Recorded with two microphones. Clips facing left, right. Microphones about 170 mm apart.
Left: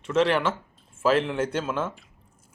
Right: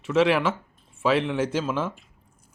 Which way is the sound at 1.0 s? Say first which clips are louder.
Even; centre (ahead or behind).